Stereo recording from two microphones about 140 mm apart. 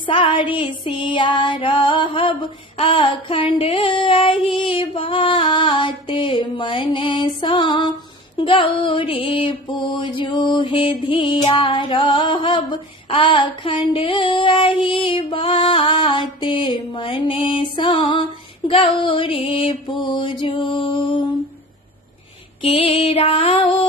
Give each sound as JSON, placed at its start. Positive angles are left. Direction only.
{"t": 0.0, "sound": "female singing", "side_deg": 35}
{"t": 8.4, "sound": "music", "side_deg": 40}
{"t": 22.6, "sound": "music", "side_deg": 40}